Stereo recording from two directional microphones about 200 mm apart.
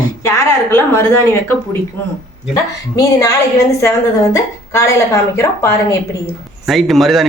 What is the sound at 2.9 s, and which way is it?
A woman's voice, 15° left (ahead or behind).